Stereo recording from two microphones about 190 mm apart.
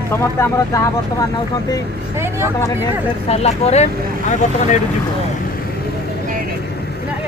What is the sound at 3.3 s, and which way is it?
Speech, 35° left (ahead or behind).